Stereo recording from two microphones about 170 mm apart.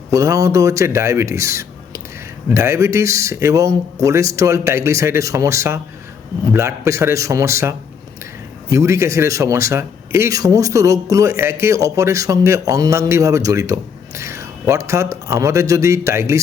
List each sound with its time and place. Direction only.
0.1 s a man's voice: 20° right (ahead or behind)